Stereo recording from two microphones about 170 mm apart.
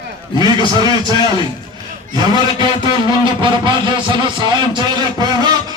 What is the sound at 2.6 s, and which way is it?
Speech, 25° right (ahead or behind).